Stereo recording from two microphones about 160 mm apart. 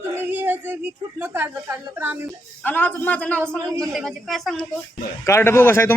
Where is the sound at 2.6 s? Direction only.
10° left (ahead or behind).